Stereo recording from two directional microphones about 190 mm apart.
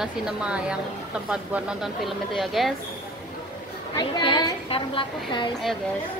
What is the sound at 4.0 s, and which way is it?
A woman's voice, 25° left (ahead or behind).